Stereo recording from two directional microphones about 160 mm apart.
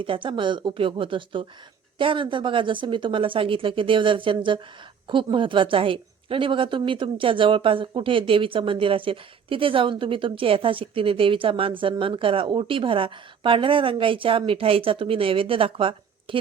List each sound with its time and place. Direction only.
0.0 s a woman's voice: 30° right (ahead or behind)